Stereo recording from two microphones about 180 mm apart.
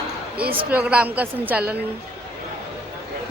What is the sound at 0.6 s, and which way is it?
A woman's voice, 10° right (ahead or behind).